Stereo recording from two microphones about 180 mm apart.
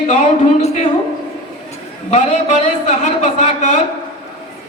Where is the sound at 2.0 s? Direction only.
40° left (ahead or behind).